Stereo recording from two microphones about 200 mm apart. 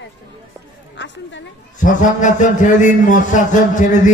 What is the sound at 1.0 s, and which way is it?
Speech, 60° left (ahead or behind).